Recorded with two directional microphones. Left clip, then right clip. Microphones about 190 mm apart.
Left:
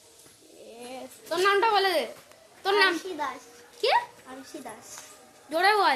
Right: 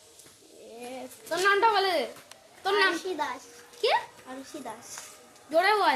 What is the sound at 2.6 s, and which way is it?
Speech, 25° left (ahead or behind).